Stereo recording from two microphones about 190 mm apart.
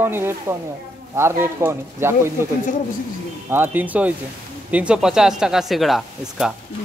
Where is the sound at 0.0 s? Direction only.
10° right (ahead or behind).